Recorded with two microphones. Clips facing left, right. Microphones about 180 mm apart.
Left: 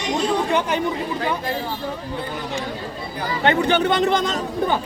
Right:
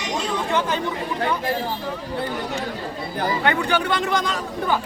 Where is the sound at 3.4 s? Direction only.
25° left (ahead or behind).